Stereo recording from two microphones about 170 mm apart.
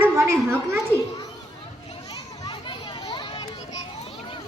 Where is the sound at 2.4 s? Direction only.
25° left (ahead or behind).